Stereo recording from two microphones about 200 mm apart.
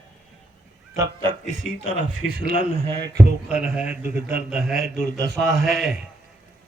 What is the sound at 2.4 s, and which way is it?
Speech, 45° right (ahead or behind).